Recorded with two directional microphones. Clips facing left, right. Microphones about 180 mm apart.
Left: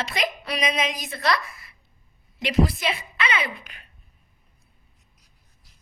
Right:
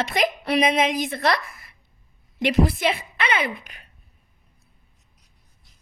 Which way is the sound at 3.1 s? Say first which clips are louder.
Right 3 dB; 55° right (ahead or behind).